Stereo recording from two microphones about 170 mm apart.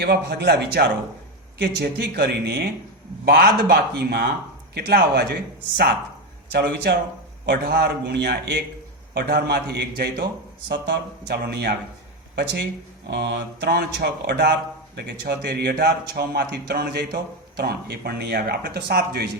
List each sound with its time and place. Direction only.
0.0 s a man's voice: 75° right (ahead or behind)
13.1 s a man's voice: 75° right (ahead or behind)